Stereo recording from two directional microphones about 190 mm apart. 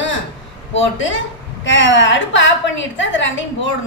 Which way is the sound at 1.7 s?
80° left.